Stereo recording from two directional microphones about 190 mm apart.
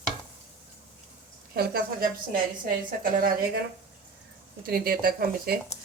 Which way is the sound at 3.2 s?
50° right (ahead or behind).